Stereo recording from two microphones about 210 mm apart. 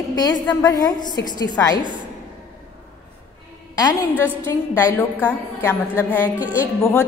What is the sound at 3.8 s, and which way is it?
A woman's voice, 15° left (ahead or behind).